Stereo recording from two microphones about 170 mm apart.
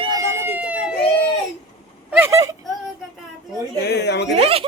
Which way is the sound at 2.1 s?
15° right (ahead or behind).